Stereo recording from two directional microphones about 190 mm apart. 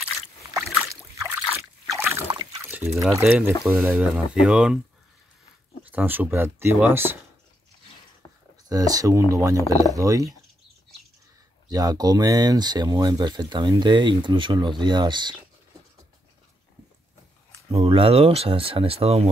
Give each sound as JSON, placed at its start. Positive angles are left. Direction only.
{"t": 1.9, "sound": "rowboat", "side_deg": -15}
{"t": 3.2, "sound": "speech", "side_deg": -10}
{"t": 5.9, "sound": "speech", "side_deg": -10}
{"t": 8.2, "sound": "a sound", "side_deg": 15}
{"t": 8.6, "sound": "speech", "side_deg": -20}
{"t": 9.6, "sound": "speech", "side_deg": 15}
{"t": 9.9, "sound": "speech", "side_deg": -15}
{"t": 11.7, "sound": "speech", "side_deg": -20}
{"t": 17.6, "sound": "speech", "side_deg": -30}